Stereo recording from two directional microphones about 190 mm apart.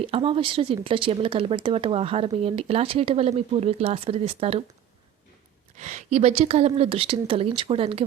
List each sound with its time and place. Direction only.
0.0 s speech: 30° right (ahead or behind)
5.7 s speech: 40° right (ahead or behind)